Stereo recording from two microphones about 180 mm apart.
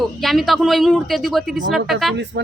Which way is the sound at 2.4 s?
75° right (ahead or behind).